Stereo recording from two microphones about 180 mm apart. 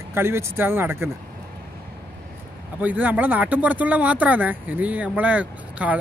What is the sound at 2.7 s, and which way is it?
Speech, 10° right (ahead or behind).